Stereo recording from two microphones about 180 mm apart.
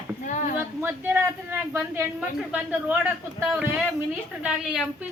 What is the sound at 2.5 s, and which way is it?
Speech, 5° right (ahead or behind).